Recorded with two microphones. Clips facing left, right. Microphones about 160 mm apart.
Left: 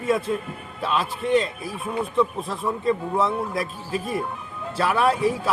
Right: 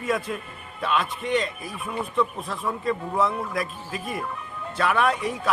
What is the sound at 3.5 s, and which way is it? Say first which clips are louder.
A man's voice: left 3 dB; 30° left (ahead or behind).